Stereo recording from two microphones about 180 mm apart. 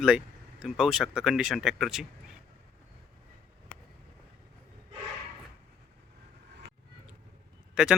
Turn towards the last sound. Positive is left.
turn(degrees=-5)  # may be behind; listen again after turning